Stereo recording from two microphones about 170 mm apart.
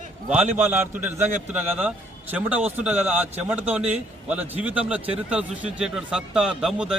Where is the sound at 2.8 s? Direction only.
10° right (ahead or behind).